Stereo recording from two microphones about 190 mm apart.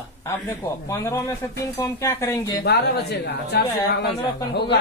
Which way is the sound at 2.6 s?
60° left (ahead or behind).